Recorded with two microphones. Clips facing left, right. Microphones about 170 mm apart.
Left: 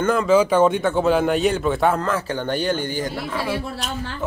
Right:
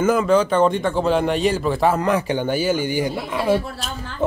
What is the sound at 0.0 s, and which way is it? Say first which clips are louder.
Speech: right 1 dB; 5° right (ahead or behind).